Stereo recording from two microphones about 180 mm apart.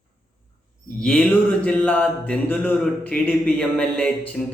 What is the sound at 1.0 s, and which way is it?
A man's voice, 5° left (ahead or behind).